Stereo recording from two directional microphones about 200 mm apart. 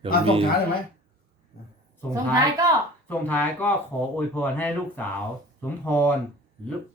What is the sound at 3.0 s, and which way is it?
Speech, 10° left (ahead or behind).